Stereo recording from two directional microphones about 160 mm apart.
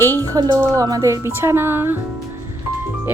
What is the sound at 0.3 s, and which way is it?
A woman's voice, 25° right (ahead or behind).